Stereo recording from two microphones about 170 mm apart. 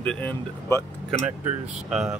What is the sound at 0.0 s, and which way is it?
Speech, 10° left (ahead or behind).